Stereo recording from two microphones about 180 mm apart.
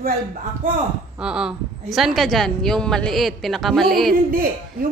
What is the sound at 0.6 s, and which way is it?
Speech, 45° right (ahead or behind).